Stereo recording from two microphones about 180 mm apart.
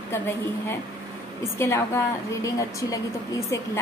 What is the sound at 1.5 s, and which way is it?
A woman's voice, 15° left (ahead or behind).